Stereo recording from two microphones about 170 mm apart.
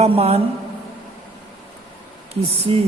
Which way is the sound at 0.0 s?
35° right (ahead or behind).